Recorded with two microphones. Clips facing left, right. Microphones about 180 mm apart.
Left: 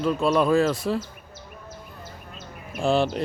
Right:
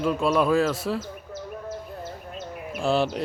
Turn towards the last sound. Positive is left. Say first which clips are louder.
# left 1 dB
turn(degrees=-5)  # may be behind; listen again after turning